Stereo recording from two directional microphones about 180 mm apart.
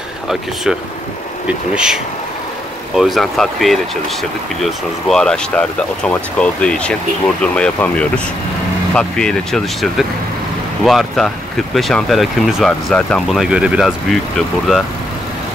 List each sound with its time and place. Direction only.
3.0 s speech: centre (ahead or behind)